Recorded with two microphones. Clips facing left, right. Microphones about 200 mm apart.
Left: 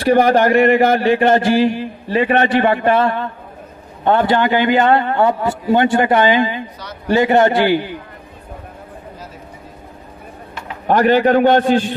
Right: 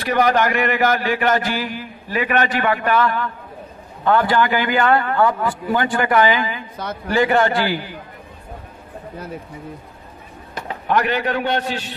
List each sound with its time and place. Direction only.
0.0 s speech: 30° left (ahead or behind)
10.9 s speech: 45° left (ahead or behind)
11.1 s a man's voice: 35° left (ahead or behind)